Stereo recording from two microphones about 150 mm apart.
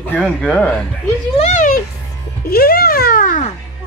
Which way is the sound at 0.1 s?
10° left (ahead or behind).